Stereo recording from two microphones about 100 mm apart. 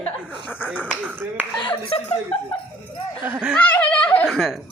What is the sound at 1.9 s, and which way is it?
Speech, 75° left (ahead or behind).